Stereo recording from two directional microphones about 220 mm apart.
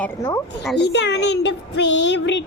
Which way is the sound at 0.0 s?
15° left (ahead or behind).